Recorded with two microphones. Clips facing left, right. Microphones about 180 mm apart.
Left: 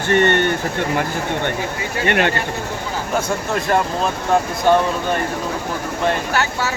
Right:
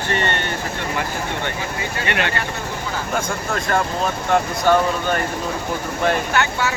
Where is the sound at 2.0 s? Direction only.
50° left (ahead or behind).